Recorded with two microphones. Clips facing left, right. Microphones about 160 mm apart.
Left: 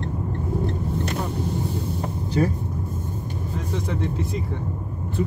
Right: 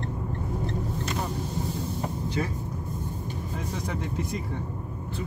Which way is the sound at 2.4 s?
40° left (ahead or behind).